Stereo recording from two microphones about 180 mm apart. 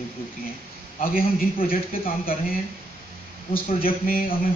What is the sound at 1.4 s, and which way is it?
A man's voice, 55° left (ahead or behind).